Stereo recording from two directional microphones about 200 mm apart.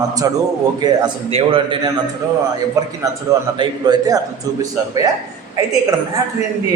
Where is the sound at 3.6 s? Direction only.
20° right (ahead or behind).